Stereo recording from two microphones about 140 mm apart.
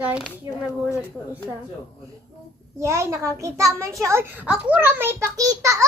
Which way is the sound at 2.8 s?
20° right (ahead or behind).